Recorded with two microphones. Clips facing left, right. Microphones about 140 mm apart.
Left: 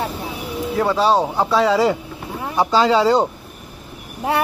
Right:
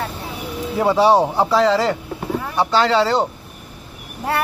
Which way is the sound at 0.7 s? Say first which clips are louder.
Right 3 dB; 15° right (ahead or behind).